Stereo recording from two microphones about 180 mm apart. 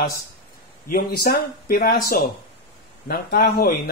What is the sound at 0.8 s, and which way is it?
Speech, 60° left (ahead or behind).